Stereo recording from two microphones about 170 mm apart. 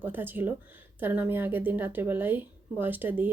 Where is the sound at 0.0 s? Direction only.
10° right (ahead or behind).